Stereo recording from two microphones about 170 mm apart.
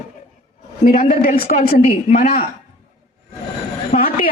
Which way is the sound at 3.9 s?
55° left (ahead or behind).